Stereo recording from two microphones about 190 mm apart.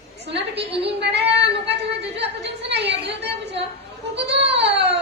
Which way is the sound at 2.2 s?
65° right (ahead or behind).